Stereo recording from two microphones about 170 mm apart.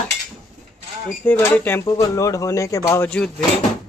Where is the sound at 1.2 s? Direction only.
10° left (ahead or behind).